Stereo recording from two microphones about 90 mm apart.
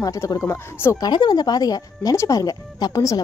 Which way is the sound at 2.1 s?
35° left (ahead or behind).